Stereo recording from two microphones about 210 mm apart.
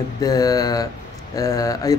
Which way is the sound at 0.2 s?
15° left (ahead or behind).